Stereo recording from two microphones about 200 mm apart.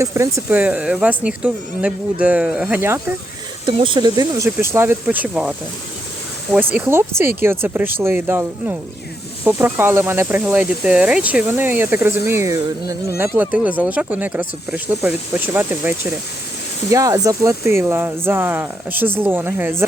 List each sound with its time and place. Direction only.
0.0 s a woman's voice: 15° right (ahead or behind)
3.7 s speech: 25° right (ahead or behind)